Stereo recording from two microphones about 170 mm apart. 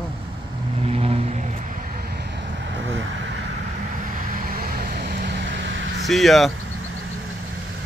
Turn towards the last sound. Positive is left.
turn(degrees=0)  # may be behind; listen again after turning